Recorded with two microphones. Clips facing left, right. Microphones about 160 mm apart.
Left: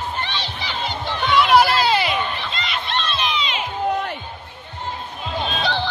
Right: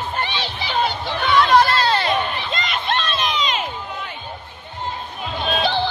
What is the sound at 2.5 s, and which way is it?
Crowd, 45° right (ahead or behind).